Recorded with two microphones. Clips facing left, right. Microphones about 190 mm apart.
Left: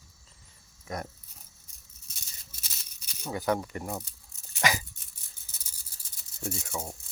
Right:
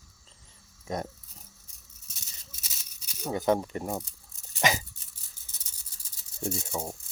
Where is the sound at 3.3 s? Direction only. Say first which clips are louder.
Right 3 dB; 25° right (ahead or behind).